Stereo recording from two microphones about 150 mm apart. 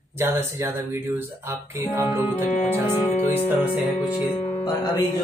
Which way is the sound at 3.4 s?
10° right (ahead or behind).